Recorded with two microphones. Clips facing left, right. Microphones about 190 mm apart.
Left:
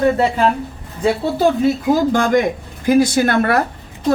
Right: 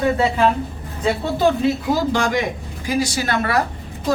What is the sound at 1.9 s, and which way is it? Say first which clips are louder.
A woman's voice: left 5 dB; 50° left (ahead or behind).